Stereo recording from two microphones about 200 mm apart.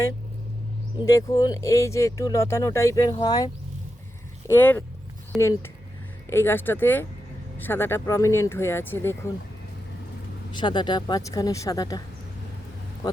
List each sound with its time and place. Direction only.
0.9 s speech: 15° left (ahead or behind)
10.5 s speech: 20° left (ahead or behind)